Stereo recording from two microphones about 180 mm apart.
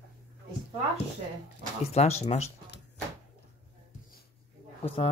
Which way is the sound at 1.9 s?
35° left (ahead or behind).